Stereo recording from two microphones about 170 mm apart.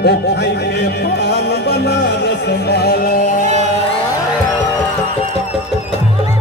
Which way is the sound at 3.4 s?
45° right (ahead or behind).